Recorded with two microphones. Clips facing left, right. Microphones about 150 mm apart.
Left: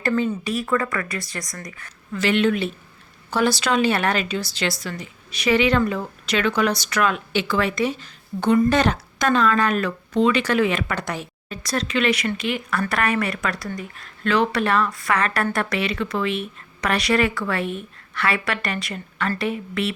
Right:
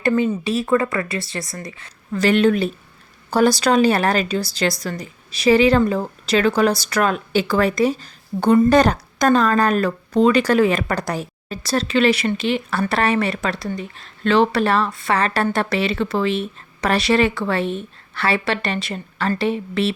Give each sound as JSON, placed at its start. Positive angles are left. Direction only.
{"t": 0.0, "sound": "a woman's voice", "side_deg": -20}
{"t": 2.1, "sound": "a woman's voice", "side_deg": -40}